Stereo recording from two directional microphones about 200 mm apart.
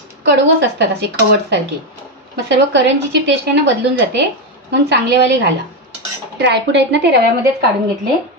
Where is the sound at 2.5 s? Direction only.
60° right (ahead or behind).